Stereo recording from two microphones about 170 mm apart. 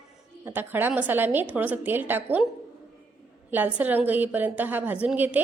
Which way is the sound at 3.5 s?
10° right (ahead or behind).